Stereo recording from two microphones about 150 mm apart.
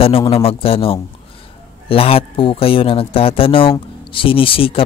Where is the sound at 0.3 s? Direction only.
40° left (ahead or behind).